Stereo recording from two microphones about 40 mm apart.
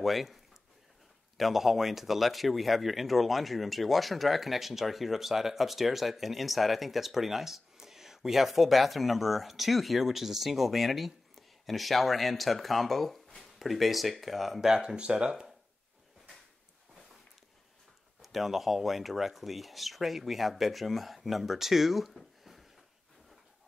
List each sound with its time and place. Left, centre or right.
0.0 s speech: centre
1.4 s speech: centre
14.6 s speech: centre
15.0 s speech: right
18.2 s speech: centre